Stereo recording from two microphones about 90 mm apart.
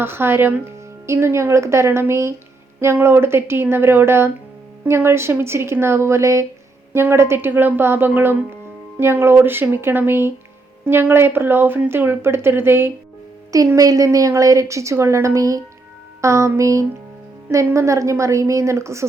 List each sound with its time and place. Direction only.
0.0 s a woman's voice: 25° right (ahead or behind)
13.7 s a woman's voice: 40° right (ahead or behind)